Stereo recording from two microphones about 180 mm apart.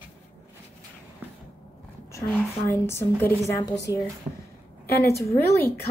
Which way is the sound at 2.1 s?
15° left (ahead or behind).